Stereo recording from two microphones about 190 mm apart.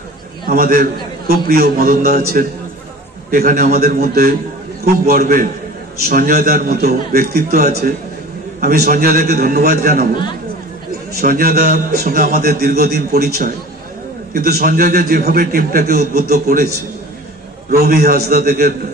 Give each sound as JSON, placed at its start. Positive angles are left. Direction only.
{"t": 0.5, "sound": "a man's voice", "side_deg": -50}
{"t": 11.1, "sound": "a man's voice", "side_deg": -50}